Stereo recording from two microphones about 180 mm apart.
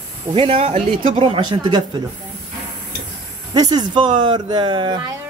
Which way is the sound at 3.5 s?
20° right (ahead or behind).